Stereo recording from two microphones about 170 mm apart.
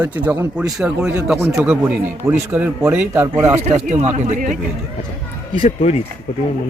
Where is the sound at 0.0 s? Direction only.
10° right (ahead or behind).